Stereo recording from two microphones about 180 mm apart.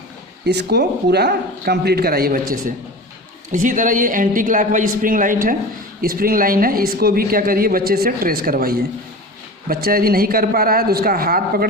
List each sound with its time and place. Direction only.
0.4 s a man's voice: 65° right (ahead or behind)
3.5 s a man's voice: 45° right (ahead or behind)